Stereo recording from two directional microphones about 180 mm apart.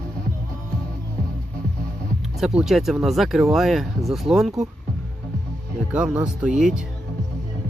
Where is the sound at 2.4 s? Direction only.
5° right (ahead or behind).